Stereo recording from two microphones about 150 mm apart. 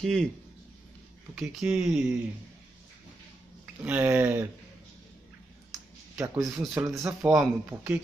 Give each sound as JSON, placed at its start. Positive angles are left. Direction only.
{"t": 0.0, "sound": "speech", "side_deg": 5}
{"t": 1.3, "sound": "speech", "side_deg": -5}
{"t": 3.8, "sound": "speech", "side_deg": -10}
{"t": 6.1, "sound": "speech", "side_deg": -20}
{"t": 6.4, "sound": "speech", "side_deg": 0}
{"t": 7.0, "sound": "speech", "side_deg": -20}
{"t": 7.3, "sound": "speech", "side_deg": -10}